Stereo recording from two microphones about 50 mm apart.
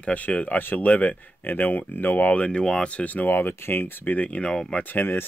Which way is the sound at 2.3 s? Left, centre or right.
Left.